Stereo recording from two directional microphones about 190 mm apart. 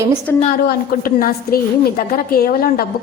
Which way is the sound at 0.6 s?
50° left (ahead or behind).